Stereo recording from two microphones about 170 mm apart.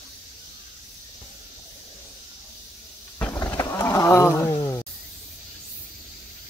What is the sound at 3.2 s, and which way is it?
Roaring cats, 15° left (ahead or behind).